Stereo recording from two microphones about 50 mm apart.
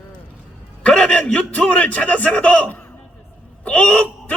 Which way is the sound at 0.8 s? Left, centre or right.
Left.